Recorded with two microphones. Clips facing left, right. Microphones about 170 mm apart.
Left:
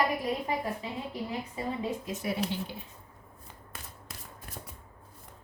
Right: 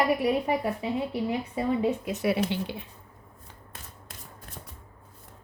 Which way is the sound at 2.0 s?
70° right (ahead or behind).